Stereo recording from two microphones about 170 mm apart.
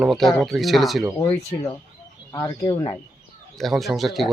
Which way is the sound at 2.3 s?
20° left (ahead or behind).